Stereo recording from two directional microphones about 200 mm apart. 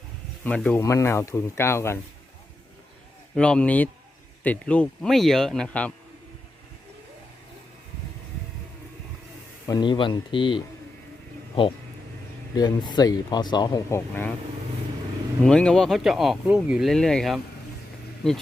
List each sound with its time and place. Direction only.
0.4 s speech: 5° left (ahead or behind)
3.3 s speech: 5° left (ahead or behind)
9.6 s speech: 20° left (ahead or behind)
12.5 s speech: 20° left (ahead or behind)
15.4 s speech: 5° left (ahead or behind)